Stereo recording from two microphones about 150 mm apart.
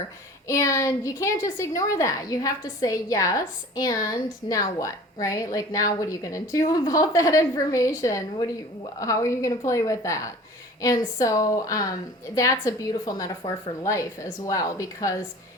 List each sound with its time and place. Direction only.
0.4 s a woman's voice: 20° left (ahead or behind)